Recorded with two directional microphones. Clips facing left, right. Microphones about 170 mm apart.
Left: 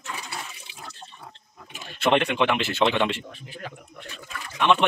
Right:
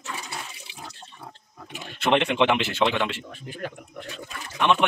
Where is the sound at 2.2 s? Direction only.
20° right (ahead or behind).